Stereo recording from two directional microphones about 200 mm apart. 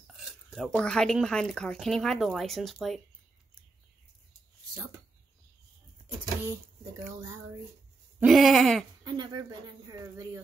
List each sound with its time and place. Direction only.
0.0 s speech: centre (ahead or behind)
6.9 s speech: 15° right (ahead or behind)
8.2 s speech: centre (ahead or behind)
9.0 s speech: 20° right (ahead or behind)